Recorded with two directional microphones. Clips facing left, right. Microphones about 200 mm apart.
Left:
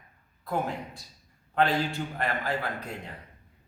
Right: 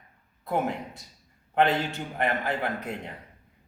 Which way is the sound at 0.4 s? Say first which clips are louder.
Right 3 dB; 20° right (ahead or behind).